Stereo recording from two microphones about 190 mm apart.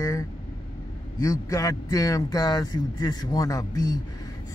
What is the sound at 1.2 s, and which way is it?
Speech, 15° left (ahead or behind).